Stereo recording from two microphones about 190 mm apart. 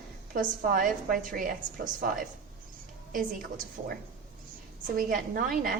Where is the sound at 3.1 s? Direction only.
45° right (ahead or behind).